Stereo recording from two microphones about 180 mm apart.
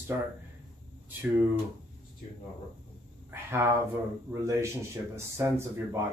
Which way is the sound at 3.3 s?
15° right (ahead or behind).